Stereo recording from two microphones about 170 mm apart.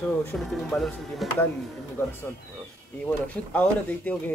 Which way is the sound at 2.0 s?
15° left (ahead or behind).